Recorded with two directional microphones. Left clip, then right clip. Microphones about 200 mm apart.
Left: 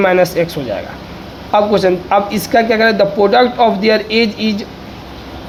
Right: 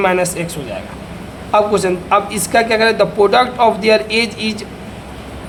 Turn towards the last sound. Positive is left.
turn(degrees=10)  # may be behind; listen again after turning